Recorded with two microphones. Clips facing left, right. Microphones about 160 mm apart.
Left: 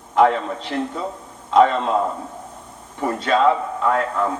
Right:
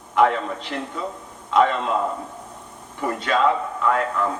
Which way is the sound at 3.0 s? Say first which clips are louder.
Left 3 dB; 35° left (ahead or behind).